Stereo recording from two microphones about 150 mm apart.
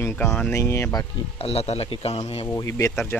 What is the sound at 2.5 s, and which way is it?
Speech, 20° left (ahead or behind).